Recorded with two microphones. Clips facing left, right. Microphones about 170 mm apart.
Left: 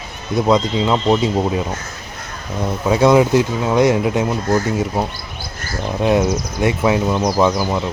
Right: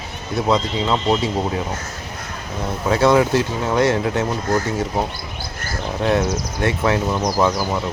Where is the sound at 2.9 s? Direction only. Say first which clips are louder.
Left 3 dB; 15° left (ahead or behind).